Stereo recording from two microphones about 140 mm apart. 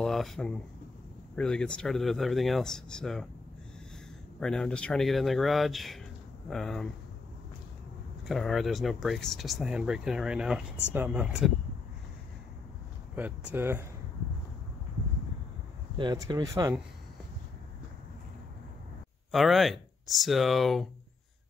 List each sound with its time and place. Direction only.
0.0 s speech: centre (ahead or behind)
4.4 s speech: 5° left (ahead or behind)
8.3 s speech: centre (ahead or behind)
13.1 s speech: 10° right (ahead or behind)
16.0 s speech: 30° right (ahead or behind)
19.3 s speech: centre (ahead or behind)